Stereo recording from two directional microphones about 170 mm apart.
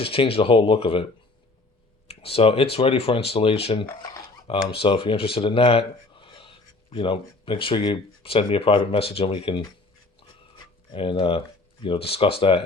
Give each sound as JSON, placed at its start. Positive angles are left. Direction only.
{"t": 0.0, "sound": "speech", "side_deg": 35}
{"t": 2.0, "sound": "speech", "side_deg": 35}
{"t": 10.9, "sound": "speech", "side_deg": 30}